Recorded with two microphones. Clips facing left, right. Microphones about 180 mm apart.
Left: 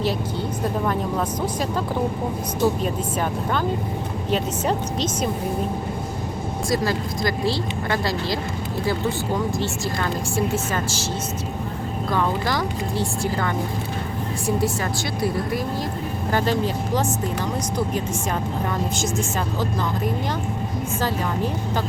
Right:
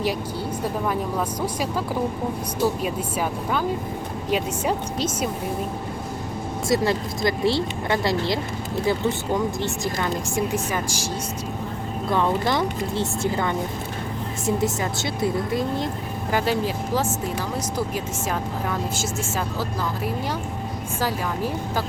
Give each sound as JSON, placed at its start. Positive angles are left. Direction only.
{"t": 2.8, "sound": "a woman's voice", "side_deg": -5}
{"t": 6.7, "sound": "speech", "side_deg": -25}
{"t": 9.6, "sound": "a woman's voice", "side_deg": -20}
{"t": 12.1, "sound": "speech", "side_deg": -20}
{"t": 15.2, "sound": "speech", "side_deg": -25}
{"t": 16.3, "sound": "a woman's voice", "side_deg": -5}